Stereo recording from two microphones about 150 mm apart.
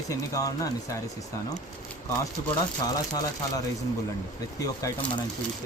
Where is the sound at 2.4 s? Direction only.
20° left (ahead or behind).